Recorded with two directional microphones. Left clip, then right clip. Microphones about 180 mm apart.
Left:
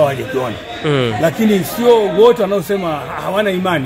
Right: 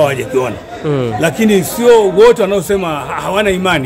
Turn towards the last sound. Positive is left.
turn(degrees=-30)  # may be behind; listen again after turning